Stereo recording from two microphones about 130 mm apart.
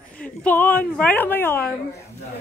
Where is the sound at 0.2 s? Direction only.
10° left (ahead or behind).